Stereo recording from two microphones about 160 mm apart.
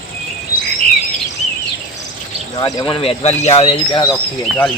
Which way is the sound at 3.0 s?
40° left (ahead or behind).